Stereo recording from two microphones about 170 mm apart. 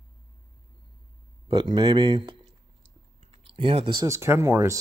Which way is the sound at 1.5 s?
30° right (ahead or behind).